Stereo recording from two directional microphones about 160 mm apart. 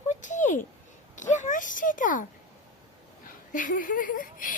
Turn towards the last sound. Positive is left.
turn(degrees=55)  # may be behind; listen again after turning